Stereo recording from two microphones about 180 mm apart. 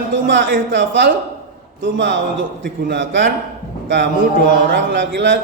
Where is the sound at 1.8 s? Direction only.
75° right (ahead or behind).